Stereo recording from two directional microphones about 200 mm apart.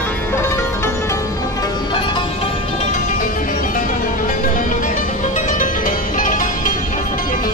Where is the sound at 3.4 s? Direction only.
40° left (ahead or behind).